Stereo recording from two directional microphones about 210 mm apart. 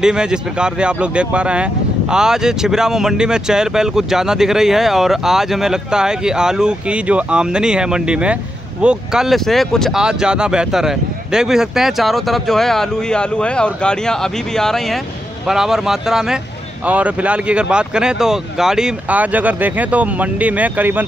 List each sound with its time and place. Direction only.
0.0 s speech: 5° right (ahead or behind)